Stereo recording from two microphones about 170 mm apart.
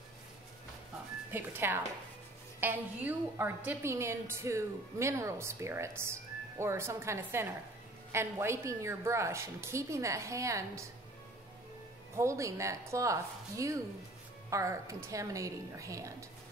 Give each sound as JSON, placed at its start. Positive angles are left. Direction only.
{"t": 1.3, "sound": "a woman's voice", "side_deg": -10}
{"t": 12.2, "sound": "a woman's voice", "side_deg": -15}